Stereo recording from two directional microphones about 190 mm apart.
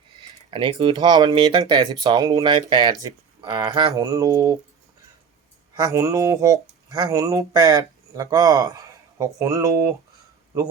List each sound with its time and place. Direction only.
0.5 s speech: 25° right (ahead or behind)
5.7 s speech: 15° right (ahead or behind)